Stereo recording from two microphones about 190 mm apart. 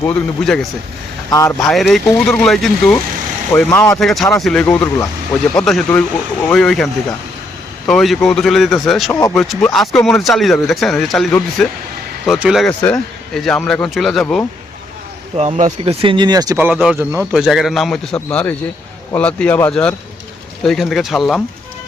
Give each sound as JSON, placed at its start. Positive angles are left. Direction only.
{"t": 0.1, "sound": "speech", "side_deg": 5}
{"t": 1.3, "sound": "speech", "side_deg": 15}
{"t": 1.7, "sound": "speech", "side_deg": 0}
{"t": 4.0, "sound": "speech", "side_deg": 0}
{"t": 15.4, "sound": "speech", "side_deg": -35}